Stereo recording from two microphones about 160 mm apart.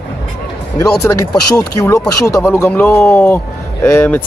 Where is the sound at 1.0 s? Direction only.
20° left (ahead or behind).